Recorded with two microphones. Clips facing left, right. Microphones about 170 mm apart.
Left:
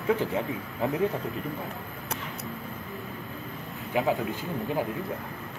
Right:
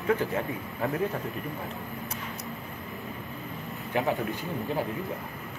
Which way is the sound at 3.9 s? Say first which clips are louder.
Left 2 dB; 20° left (ahead or behind).